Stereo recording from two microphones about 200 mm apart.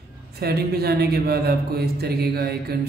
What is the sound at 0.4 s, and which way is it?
Speech, 50° right (ahead or behind).